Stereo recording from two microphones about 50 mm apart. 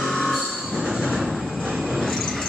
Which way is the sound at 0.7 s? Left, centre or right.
Centre.